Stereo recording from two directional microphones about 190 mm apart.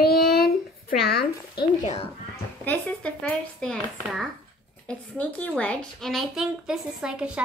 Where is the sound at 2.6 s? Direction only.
5° left (ahead or behind).